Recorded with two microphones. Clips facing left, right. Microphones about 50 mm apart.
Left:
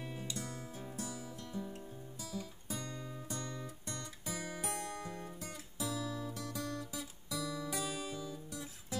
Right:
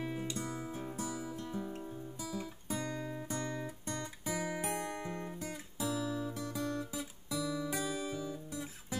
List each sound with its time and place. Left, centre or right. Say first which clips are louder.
0.0 s music: right 5 dB; right